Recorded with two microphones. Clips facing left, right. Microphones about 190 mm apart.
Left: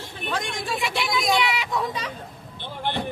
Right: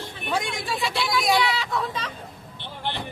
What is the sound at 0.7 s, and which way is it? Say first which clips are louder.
Speech: right 1 dB; 20° left (ahead or behind).